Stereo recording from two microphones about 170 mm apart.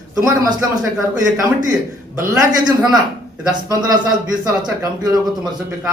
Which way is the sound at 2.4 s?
25° right (ahead or behind).